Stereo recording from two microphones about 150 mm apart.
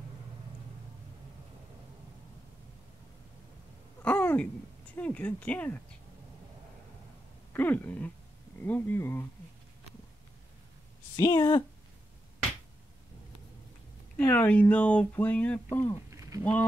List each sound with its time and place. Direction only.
4.0 s a sound: 10° left (ahead or behind)
4.9 s speech: 10° left (ahead or behind)
7.5 s speech: 10° left (ahead or behind)
11.1 s speech: 25° left (ahead or behind)
14.1 s speech: 10° left (ahead or behind)
16.1 s a sound: 20° right (ahead or behind)